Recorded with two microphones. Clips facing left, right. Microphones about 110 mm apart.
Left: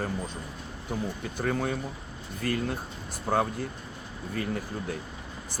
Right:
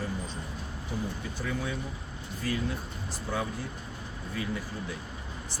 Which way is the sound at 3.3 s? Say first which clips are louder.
Left 7 dB; 45° left (ahead or behind).